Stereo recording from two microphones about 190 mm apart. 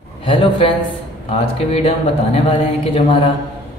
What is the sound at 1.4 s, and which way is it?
Speech, 30° left (ahead or behind).